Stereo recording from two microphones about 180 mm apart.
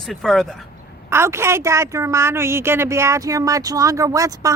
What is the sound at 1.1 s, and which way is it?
A woman's voice, 15° right (ahead or behind).